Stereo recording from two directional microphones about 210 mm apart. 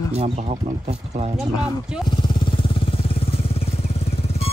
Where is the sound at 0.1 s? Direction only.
30° right (ahead or behind).